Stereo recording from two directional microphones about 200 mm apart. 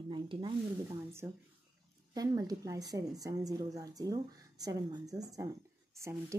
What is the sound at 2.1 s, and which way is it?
A woman's voice, 20° right (ahead or behind).